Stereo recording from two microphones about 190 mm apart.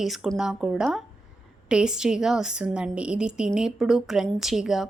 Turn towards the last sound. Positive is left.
turn(degrees=0)  # may be behind; listen again after turning